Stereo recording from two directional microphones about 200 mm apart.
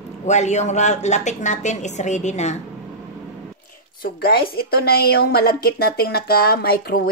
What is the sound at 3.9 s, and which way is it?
A woman's voice, 50° left (ahead or behind).